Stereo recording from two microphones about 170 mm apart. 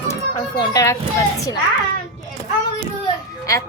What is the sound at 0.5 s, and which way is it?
Speech, 20° left (ahead or behind).